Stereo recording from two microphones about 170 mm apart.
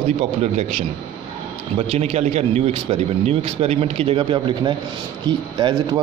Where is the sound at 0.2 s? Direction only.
40° right (ahead or behind).